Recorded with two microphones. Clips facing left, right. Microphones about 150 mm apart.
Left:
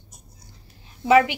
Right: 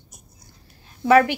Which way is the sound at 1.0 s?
15° left (ahead or behind).